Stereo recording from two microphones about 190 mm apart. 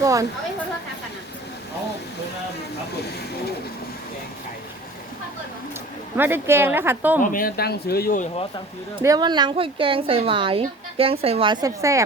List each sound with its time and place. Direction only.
0.0 s speech: 15° right (ahead or behind)
6.1 s speech: 10° right (ahead or behind)
7.2 s speech: 50° left (ahead or behind)
9.0 s speech: 20° right (ahead or behind)